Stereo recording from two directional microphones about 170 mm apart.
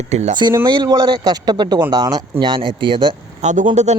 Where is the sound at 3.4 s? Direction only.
45° right (ahead or behind).